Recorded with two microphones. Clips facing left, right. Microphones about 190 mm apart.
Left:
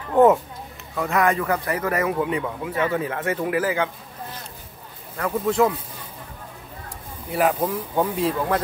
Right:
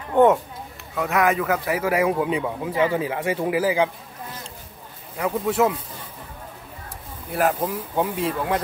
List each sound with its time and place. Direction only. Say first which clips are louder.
0.1 s speech: left 1 dB; centre (ahead or behind)
2.0 s speech: right 1 dB; 20° right (ahead or behind)
5.1 s speech: even; 10° right (ahead or behind)
7.3 s speech: left 1 dB; centre (ahead or behind)